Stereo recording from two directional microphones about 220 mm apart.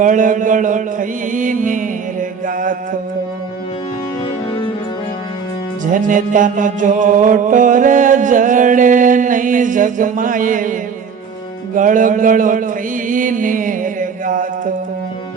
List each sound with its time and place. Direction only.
0.0 s music: 35° right (ahead or behind)
5.8 s music: 35° right (ahead or behind)